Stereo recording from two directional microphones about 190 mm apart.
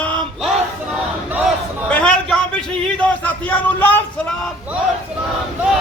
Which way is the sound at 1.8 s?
5° left (ahead or behind).